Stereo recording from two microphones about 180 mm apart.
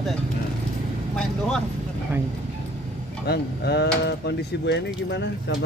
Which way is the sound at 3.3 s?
65° left (ahead or behind).